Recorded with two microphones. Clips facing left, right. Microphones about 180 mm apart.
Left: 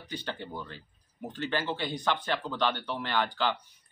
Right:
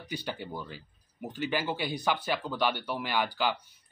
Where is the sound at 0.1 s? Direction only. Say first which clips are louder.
Right 1 dB; 10° right (ahead or behind).